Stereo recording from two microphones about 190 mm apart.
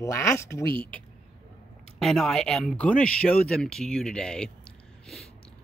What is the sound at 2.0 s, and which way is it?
Speech, centre (ahead or behind).